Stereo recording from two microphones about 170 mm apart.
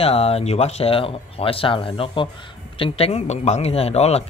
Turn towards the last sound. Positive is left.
turn(degrees=40)  # may be behind; listen again after turning